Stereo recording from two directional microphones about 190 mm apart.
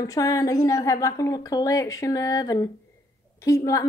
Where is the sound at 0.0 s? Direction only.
20° left (ahead or behind).